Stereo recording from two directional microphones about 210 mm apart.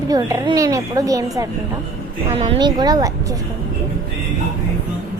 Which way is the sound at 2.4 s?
25° right (ahead or behind).